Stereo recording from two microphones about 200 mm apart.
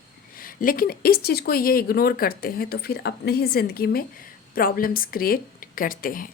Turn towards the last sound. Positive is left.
turn(degrees=45)  # may be behind; listen again after turning